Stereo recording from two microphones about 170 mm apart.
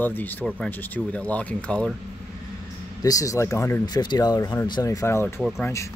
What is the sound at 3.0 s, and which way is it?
Speech, 20° left (ahead or behind).